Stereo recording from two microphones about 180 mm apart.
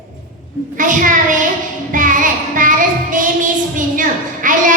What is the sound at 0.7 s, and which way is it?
Child singing, 45° right (ahead or behind).